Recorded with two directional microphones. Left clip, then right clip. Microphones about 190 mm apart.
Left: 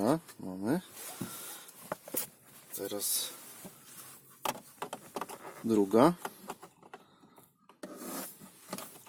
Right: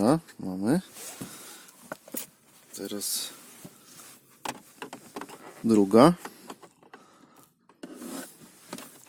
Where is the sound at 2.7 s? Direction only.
40° right (ahead or behind).